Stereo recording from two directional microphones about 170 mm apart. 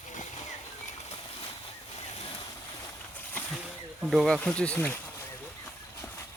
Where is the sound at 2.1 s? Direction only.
40° left (ahead or behind).